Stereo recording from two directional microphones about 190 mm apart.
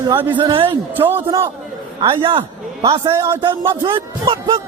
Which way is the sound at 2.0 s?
25° right (ahead or behind).